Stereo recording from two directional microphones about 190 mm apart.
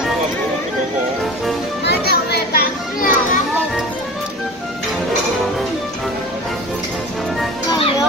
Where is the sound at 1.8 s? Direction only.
55° left (ahead or behind).